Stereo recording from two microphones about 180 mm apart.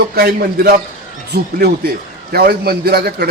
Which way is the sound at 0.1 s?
60° right (ahead or behind).